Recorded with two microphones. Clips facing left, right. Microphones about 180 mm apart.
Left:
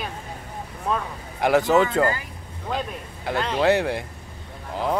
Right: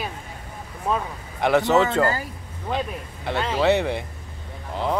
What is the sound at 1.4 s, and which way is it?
Speech, 5° left (ahead or behind).